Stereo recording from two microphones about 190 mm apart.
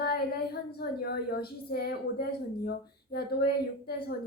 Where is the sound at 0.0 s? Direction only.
55° left (ahead or behind).